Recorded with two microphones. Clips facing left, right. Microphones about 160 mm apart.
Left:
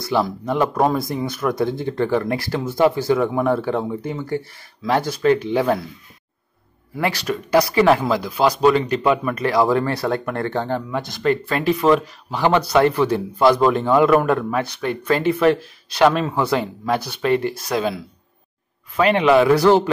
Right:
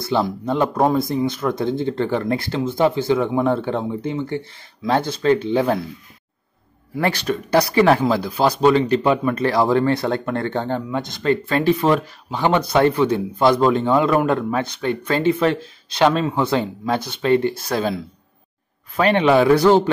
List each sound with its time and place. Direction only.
0.0 s speech: 25° right (ahead or behind)
7.0 s speech: 30° right (ahead or behind)
19.5 s speech: 20° right (ahead or behind)